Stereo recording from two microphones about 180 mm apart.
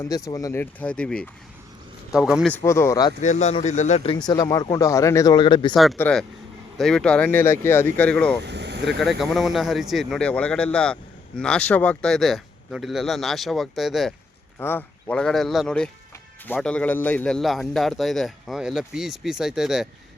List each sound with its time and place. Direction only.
0.0 s a man's voice: 20° left (ahead or behind); by 2.5 s 5° right (ahead or behind)
2.5 s speech: 15° left (ahead or behind)
3.2 s speech: 40° left (ahead or behind)
4.3 s speech: 20° left (ahead or behind)
5.7 s a man's voice: centre (ahead or behind)
8.4 s vehicle: 70° right (ahead or behind)
9.3 s a man's voice: centre (ahead or behind)
14.6 s a man's voice: 10° left (ahead or behind)